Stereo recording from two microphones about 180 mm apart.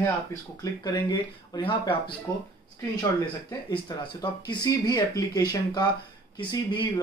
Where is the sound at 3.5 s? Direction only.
25° left (ahead or behind).